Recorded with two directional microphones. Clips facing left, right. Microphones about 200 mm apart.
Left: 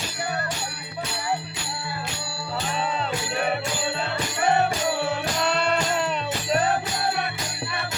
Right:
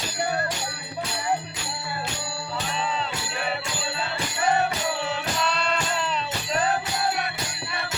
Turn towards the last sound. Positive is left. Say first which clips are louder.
# left 3 dB
turn(degrees=55)  # may be behind; listen again after turning